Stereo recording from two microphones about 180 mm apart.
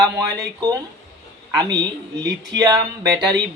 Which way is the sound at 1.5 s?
20° right (ahead or behind).